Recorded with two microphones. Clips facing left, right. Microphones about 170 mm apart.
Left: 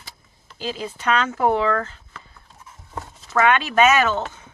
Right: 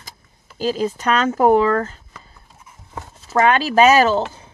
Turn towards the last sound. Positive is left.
turn(degrees=-35)  # may be behind; listen again after turning